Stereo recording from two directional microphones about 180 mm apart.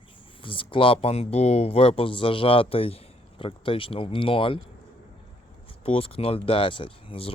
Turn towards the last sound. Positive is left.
turn(degrees=30)  # may be behind; listen again after turning